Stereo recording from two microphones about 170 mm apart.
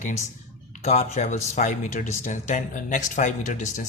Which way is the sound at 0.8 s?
45° left (ahead or behind).